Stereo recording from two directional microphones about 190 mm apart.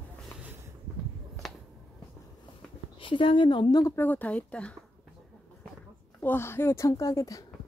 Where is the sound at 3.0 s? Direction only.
25° left (ahead or behind); by 4.7 s 5° left (ahead or behind).